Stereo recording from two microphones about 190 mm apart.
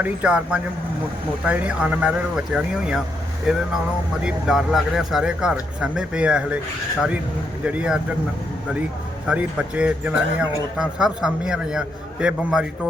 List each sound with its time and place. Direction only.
0.0 s speech: 5° right (ahead or behind)
7.6 s speech: 5° right (ahead or behind)
9.2 s speech: 5° right (ahead or behind)